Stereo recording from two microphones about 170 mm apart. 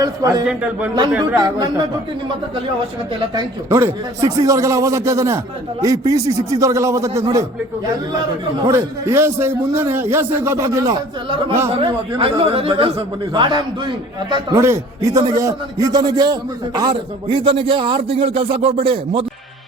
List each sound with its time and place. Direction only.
0.0 s speech: 20° right (ahead or behind)
0.4 s a man's voice: 5° right (ahead or behind)
1.4 s speech: 25° right (ahead or behind)
3.2 s a man's voice: 20° right (ahead or behind)
8.7 s a man's voice: 15° right (ahead or behind); by 19.2 s 35° right (ahead or behind)